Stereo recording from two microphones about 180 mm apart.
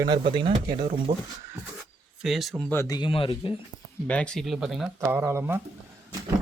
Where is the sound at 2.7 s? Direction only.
20° left (ahead or behind).